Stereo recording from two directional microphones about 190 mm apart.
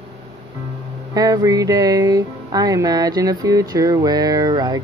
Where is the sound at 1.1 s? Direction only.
20° right (ahead or behind).